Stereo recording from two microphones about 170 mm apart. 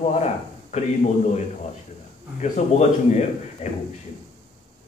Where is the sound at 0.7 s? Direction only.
40° left (ahead or behind).